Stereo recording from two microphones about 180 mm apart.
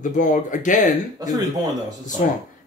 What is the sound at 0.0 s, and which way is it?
Speech, 45° left (ahead or behind).